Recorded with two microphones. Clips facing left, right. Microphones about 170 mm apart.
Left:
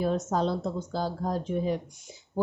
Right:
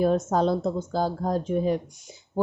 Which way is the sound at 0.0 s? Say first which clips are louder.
Right 5 dB; 50° right (ahead or behind).